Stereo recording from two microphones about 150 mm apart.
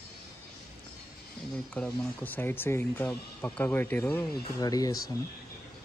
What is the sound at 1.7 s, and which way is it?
Speech, 10° left (ahead or behind).